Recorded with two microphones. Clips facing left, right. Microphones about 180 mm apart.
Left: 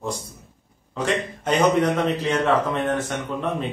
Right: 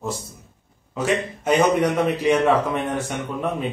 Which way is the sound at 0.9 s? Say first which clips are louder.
Right 2 dB; 5° right (ahead or behind).